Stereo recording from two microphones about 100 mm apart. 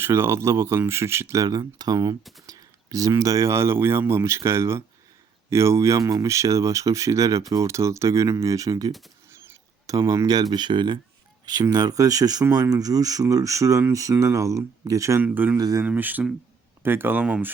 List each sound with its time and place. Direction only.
0.0 s speech: 25° right (ahead or behind)
1.5 s speech: 40° right (ahead or behind)
15.2 s speech: 15° right (ahead or behind)
15.5 s speech: 35° right (ahead or behind)
15.9 s speech: 15° right (ahead or behind)